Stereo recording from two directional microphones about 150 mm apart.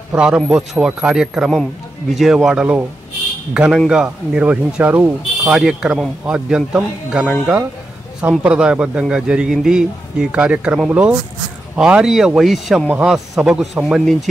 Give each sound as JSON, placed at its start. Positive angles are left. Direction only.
{"t": 0.1, "sound": "speech", "side_deg": -5}